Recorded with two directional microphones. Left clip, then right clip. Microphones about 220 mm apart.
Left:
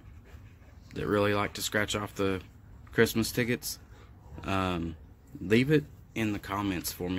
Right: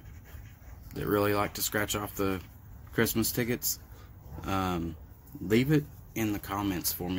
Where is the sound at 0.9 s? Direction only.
15° left (ahead or behind).